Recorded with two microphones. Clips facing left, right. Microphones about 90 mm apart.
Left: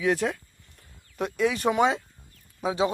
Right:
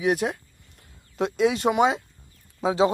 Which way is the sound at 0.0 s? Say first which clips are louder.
Right 1 dB; 15° right (ahead or behind).